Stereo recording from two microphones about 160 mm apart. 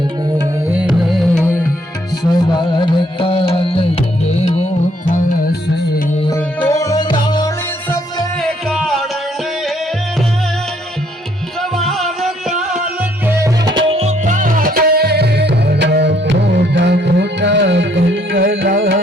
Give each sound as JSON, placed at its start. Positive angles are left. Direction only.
{"t": 0.7, "sound": "music", "side_deg": -10}
{"t": 2.6, "sound": "tabla", "side_deg": 30}
{"t": 4.3, "sound": "music", "side_deg": 40}
{"t": 5.0, "sound": "music", "side_deg": 60}
{"t": 6.3, "sound": "music", "side_deg": 20}
{"t": 8.4, "sound": "music", "side_deg": 0}
{"t": 11.8, "sound": "music", "side_deg": 0}
{"t": 14.3, "sound": "music", "side_deg": -55}